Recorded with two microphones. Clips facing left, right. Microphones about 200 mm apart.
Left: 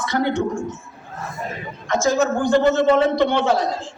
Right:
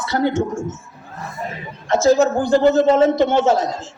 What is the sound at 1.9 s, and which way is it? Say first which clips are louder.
A man's voice: right 4 dB; 35° right (ahead or behind).